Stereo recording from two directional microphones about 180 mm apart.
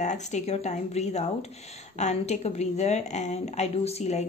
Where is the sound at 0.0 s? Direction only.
40° left (ahead or behind).